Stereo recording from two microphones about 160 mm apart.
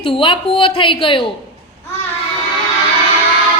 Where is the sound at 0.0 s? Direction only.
30° left (ahead or behind).